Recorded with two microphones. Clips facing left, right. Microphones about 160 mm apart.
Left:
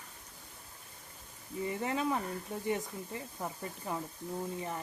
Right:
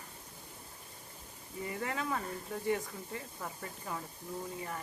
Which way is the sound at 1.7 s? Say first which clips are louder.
Left 3 dB; 25° left (ahead or behind).